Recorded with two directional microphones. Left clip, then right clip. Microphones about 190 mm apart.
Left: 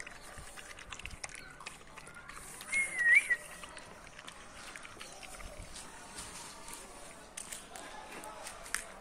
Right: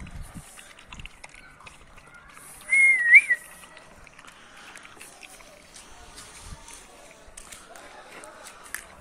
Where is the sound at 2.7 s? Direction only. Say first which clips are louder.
Right 12 dB; centre (ahead or behind).